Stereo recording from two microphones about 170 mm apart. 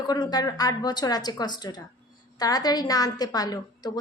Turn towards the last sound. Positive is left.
turn(degrees=25)  # may be behind; listen again after turning